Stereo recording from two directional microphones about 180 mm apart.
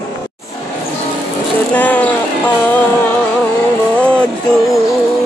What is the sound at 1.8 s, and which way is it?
Speech, 10° left (ahead or behind).